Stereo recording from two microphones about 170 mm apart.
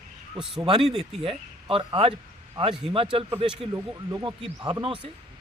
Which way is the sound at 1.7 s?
30° right (ahead or behind).